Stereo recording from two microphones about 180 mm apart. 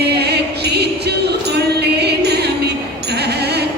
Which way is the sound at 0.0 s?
65° right (ahead or behind).